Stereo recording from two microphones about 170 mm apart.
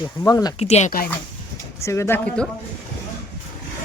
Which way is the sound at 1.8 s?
15° left (ahead or behind).